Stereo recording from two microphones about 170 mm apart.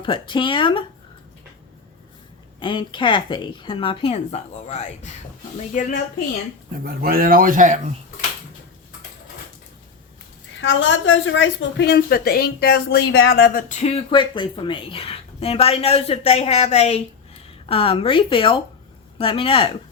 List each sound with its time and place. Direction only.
0.0 s a woman's voice: 30° left (ahead or behind)
2.6 s a woman's voice: 30° left (ahead or behind)
5.5 s speech: 50° left (ahead or behind)
6.8 s speech: 60° right (ahead or behind)
11.0 s a woman's voice: 90° left; by 19.7 s 30° left (ahead or behind)